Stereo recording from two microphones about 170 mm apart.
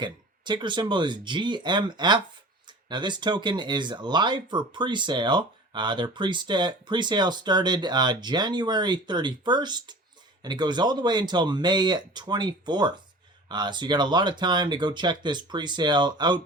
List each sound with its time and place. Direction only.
0.0 s speech: 25° right (ahead or behind)